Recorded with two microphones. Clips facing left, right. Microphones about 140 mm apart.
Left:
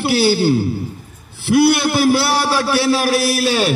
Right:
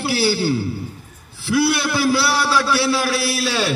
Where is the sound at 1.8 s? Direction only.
25° left (ahead or behind).